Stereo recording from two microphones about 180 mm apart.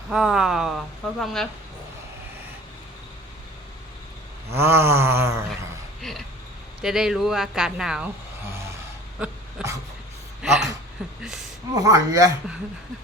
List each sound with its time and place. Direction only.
0.1 s speech: centre (ahead or behind)
4.5 s a sound: 15° right (ahead or behind)
6.0 s speech: centre (ahead or behind)
10.4 s a sound: centre (ahead or behind)
11.2 s speech: centre (ahead or behind)
11.7 s speech: 20° right (ahead or behind)